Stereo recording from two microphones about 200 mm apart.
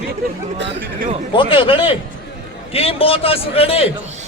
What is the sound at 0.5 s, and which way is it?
Speech, 60° right (ahead or behind).